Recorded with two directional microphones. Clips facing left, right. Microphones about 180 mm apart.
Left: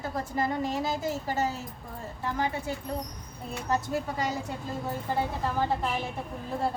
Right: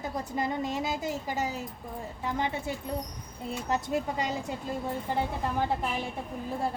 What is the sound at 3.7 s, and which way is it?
Speech, 20° right (ahead or behind).